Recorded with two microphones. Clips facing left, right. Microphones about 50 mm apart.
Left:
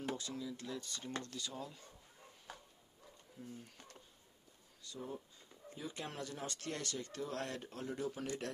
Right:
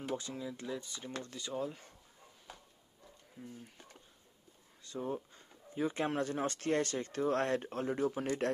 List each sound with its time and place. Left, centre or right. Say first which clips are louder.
0.1 s speech: right 4 dB; right
0.7 s speech: right 4 dB; centre
1.2 s speech: right 7 dB; right
3.4 s speech: right 2 dB; right
4.8 s speech: right 8 dB; right